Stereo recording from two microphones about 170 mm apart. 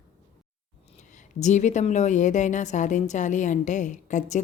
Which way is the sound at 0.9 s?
45° left (ahead or behind).